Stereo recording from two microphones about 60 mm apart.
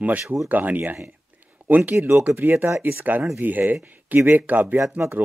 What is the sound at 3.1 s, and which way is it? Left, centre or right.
A man's voice, right.